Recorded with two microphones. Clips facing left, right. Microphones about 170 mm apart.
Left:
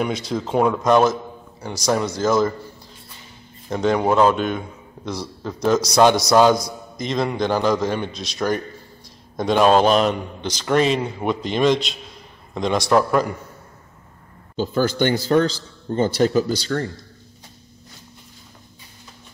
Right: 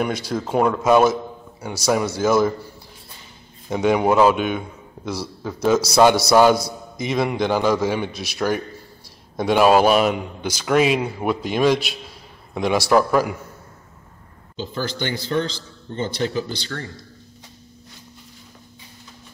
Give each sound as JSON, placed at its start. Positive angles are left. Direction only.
{"t": 0.0, "sound": "a man's voice", "side_deg": 0}
{"t": 3.6, "sound": "a man's voice", "side_deg": -10}
{"t": 14.6, "sound": "speech", "side_deg": 50}